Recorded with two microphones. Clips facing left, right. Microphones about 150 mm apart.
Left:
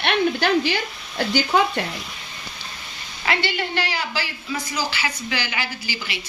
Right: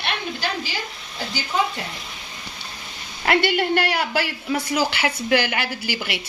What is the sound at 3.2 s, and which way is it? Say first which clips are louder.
A woman's voice: right 5 dB; 55° right (ahead or behind).